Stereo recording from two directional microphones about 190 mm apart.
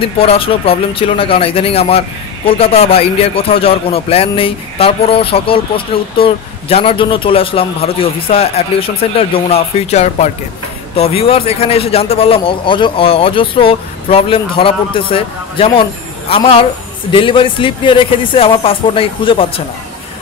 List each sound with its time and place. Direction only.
0.2 s a man's voice: 30° left (ahead or behind)